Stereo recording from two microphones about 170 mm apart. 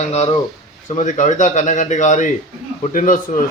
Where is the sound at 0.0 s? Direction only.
40° left (ahead or behind).